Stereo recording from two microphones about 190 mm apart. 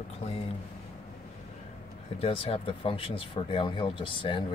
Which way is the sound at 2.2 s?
30° left (ahead or behind).